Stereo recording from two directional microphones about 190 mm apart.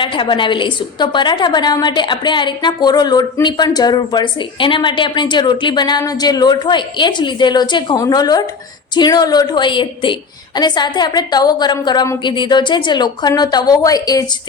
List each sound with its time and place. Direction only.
0.0 s a woman's voice: 25° left (ahead or behind)